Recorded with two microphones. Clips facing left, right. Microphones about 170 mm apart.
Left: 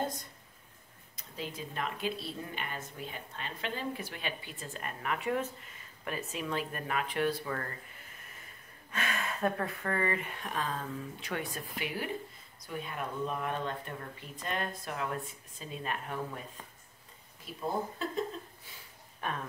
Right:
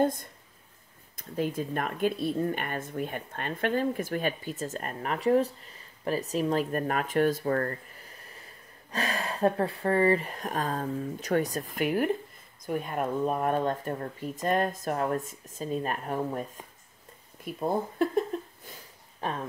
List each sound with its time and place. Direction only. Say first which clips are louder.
0.0 s speech: right 10 dB; 55° right (ahead or behind)
8.9 s speech: right 4 dB; 35° right (ahead or behind)
17.5 s speech: right 6 dB; 55° right (ahead or behind)
19.2 s speech: right 4 dB; 30° right (ahead or behind)